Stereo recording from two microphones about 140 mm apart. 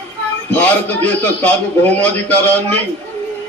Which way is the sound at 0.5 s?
10° left (ahead or behind).